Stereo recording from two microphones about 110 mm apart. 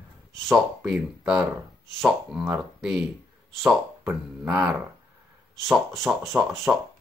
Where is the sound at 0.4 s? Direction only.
Centre (ahead or behind).